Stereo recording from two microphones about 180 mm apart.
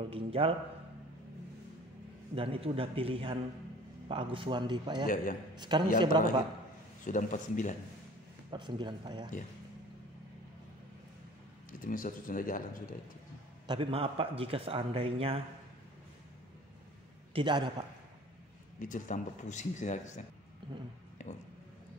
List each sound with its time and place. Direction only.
0.1 s a man's voice: 30° right (ahead or behind)
2.3 s a man's voice: 30° right (ahead or behind)
5.0 s speech: 50° left (ahead or behind)
5.6 s speech: 25° right (ahead or behind)
7.1 s speech: 45° left (ahead or behind)
8.5 s speech: 25° right (ahead or behind)
11.8 s speech: 50° left (ahead or behind)
13.7 s a man's voice: 30° right (ahead or behind)
17.3 s a man's voice: 25° right (ahead or behind)
18.8 s speech: 45° left (ahead or behind)
20.6 s a sound: 25° right (ahead or behind)